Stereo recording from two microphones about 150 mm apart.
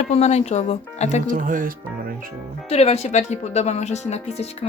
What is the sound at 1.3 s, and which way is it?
Speech, 60° right (ahead or behind).